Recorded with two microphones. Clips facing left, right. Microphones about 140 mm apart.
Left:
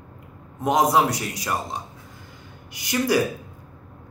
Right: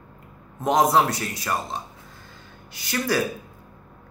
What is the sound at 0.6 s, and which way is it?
A man's voice, 10° left (ahead or behind).